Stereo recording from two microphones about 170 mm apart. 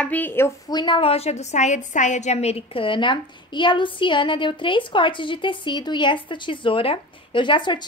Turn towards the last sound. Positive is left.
turn(degrees=30)  # may be behind; listen again after turning